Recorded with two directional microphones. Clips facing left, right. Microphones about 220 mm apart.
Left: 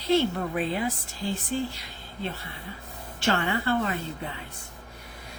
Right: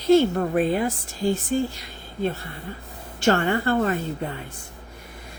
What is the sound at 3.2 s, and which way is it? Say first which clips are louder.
Speech: right 6 dB; 45° right (ahead or behind).